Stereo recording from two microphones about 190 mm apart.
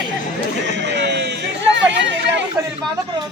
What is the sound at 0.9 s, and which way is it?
Speech, 65° right (ahead or behind).